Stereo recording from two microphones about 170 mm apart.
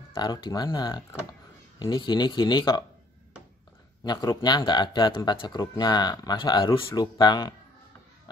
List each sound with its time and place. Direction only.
0.1 s speech: 25° left (ahead or behind)
4.0 s speech: 25° left (ahead or behind)